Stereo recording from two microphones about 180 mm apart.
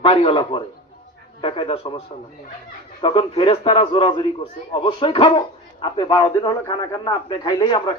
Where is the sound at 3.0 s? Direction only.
30° left (ahead or behind).